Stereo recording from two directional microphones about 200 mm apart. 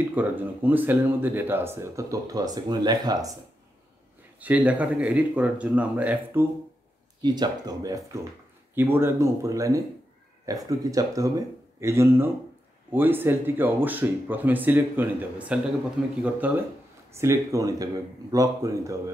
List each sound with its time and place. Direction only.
0.1 s speech: 10° right (ahead or behind)
4.4 s speech: 5° right (ahead or behind)
7.2 s speech: 20° right (ahead or behind)